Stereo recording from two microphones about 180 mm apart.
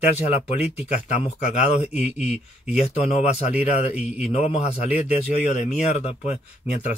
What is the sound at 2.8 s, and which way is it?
Speech, 35° left (ahead or behind).